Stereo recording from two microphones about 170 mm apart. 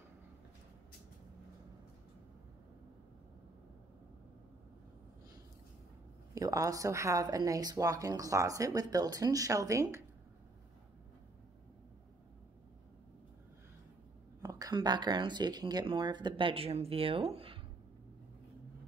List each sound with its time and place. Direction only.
6.3 s speech: 20° right (ahead or behind)
14.4 s speech: 20° right (ahead or behind)